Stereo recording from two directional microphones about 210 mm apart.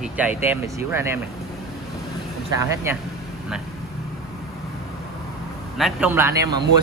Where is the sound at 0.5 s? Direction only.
10° right (ahead or behind).